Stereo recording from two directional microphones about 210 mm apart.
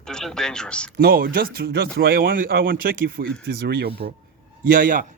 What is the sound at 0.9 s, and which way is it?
A man's voice, 45° right (ahead or behind).